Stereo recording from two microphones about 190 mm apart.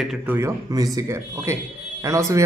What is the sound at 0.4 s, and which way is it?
Speech, 15° right (ahead or behind).